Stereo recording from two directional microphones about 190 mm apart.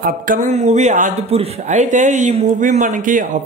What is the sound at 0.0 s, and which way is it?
Speech, 45° right (ahead or behind).